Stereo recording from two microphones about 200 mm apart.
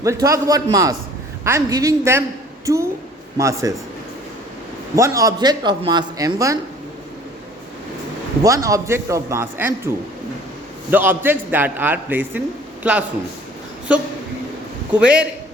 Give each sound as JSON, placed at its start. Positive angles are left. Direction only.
{"t": 0.0, "sound": "a man's voice", "side_deg": -15}
{"t": 3.3, "sound": "a man's voice", "side_deg": -15}
{"t": 4.9, "sound": "a man's voice", "side_deg": -15}
{"t": 8.4, "sound": "a man's voice", "side_deg": -15}
{"t": 10.9, "sound": "a man's voice", "side_deg": -10}